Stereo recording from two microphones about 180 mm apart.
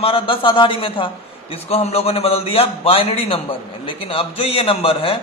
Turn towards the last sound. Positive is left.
turn(degrees=30)  # may be behind; listen again after turning